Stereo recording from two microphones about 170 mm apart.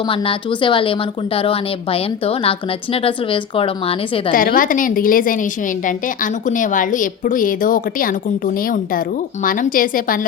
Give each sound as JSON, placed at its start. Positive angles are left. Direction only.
{"t": 0.1, "sound": "a woman's voice", "side_deg": 30}
{"t": 4.3, "sound": "a woman's voice", "side_deg": 55}
{"t": 6.6, "sound": "a woman's voice", "side_deg": 50}